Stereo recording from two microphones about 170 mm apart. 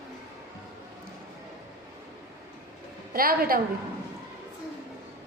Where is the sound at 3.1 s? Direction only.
60° right (ahead or behind).